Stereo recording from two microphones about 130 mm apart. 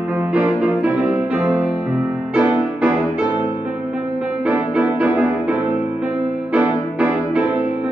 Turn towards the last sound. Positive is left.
turn(degrees=-10)  # may be behind; listen again after turning